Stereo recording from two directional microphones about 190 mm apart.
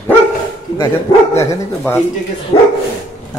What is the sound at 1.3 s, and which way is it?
Speech, 10° left (ahead or behind).